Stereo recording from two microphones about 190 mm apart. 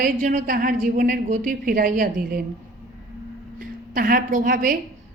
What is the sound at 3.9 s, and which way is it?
Speech, 45° right (ahead or behind).